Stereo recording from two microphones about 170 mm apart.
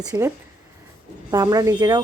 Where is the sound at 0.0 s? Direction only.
20° right (ahead or behind).